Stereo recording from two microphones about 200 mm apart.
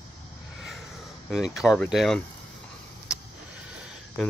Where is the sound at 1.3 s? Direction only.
Centre (ahead or behind).